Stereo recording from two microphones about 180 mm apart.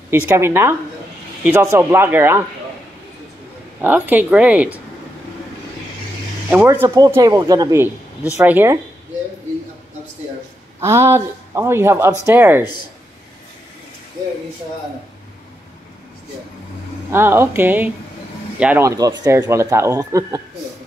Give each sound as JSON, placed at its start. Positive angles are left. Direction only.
{"t": 0.4, "sound": "speech", "side_deg": -15}
{"t": 3.8, "sound": "speech", "side_deg": -10}
{"t": 6.5, "sound": "speech", "side_deg": -10}
{"t": 10.8, "sound": "speech", "side_deg": -15}
{"t": 17.1, "sound": "speech", "side_deg": -15}